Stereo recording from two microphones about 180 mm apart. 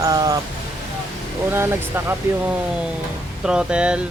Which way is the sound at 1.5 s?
15° right (ahead or behind).